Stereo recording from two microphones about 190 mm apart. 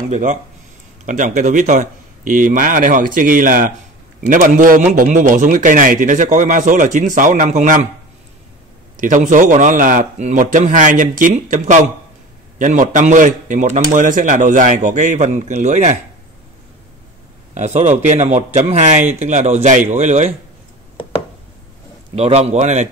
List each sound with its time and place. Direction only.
0.1 s a man's voice: 40° right (ahead or behind)
8.9 s a man's voice: 40° right (ahead or behind)
17.6 s a man's voice: 35° right (ahead or behind)
22.1 s a man's voice: 35° right (ahead or behind)